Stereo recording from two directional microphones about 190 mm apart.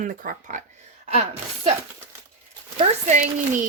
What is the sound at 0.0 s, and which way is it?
Speech, 45° right (ahead or behind).